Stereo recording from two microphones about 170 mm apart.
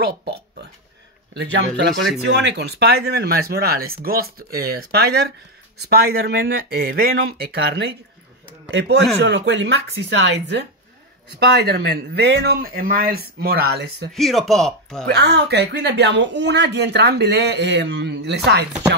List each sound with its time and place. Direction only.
0.0 s a sound: 70° right (ahead or behind)
1.3 s speech: 90° right; by 7.9 s 70° right (ahead or behind)
8.7 s speech: 85° right
11.2 s speech: 75° right (ahead or behind)
14.1 s speech: centre (ahead or behind)
15.0 s speech: 75° right (ahead or behind)